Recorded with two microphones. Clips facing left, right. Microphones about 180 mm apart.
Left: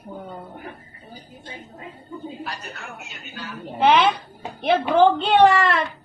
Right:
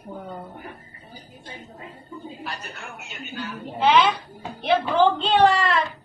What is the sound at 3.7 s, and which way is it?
A woman's voice, 55° left (ahead or behind).